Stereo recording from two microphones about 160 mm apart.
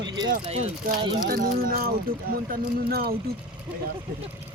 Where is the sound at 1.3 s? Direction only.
70° right (ahead or behind).